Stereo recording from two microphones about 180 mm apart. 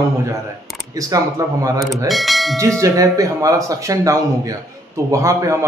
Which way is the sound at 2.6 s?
15° right (ahead or behind).